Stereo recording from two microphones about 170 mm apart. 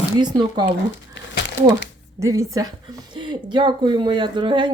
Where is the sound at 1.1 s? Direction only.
90° left.